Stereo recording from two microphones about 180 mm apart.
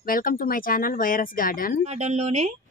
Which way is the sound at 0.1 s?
50° left (ahead or behind).